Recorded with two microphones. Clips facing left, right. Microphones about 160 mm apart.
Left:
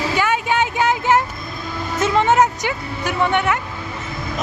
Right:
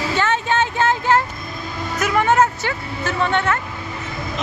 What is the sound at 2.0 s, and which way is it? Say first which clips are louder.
Speech: left 1 dB; 25° left (ahead or behind).